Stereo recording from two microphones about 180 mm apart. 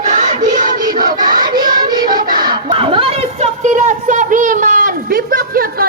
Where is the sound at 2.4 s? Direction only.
25° right (ahead or behind).